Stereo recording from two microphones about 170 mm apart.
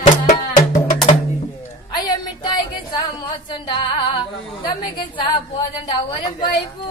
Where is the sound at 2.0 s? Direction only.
25° left (ahead or behind).